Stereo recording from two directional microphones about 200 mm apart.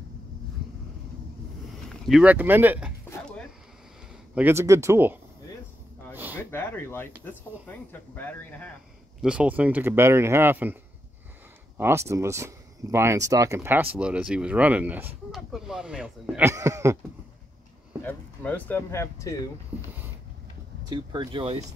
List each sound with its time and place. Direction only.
1.9 s speech: centre (ahead or behind)
3.1 s a sound: 5° left (ahead or behind)
4.4 s speech: 10° right (ahead or behind)
6.1 s a sound: 10° right (ahead or behind)
6.5 s speech: 10° left (ahead or behind)
8.1 s speech: 10° left (ahead or behind)
9.2 s speech: 5° right (ahead or behind)
11.8 s speech: 15° right (ahead or behind)
18.0 s speech: 10° left (ahead or behind)
20.9 s speech: 20° right (ahead or behind)